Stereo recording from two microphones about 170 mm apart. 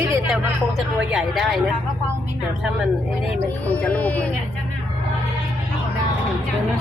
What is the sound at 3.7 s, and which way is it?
Speech, 10° left (ahead or behind).